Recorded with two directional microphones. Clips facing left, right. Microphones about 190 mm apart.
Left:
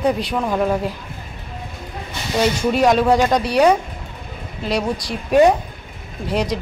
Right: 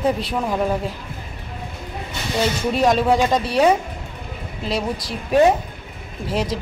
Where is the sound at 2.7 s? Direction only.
Centre (ahead or behind).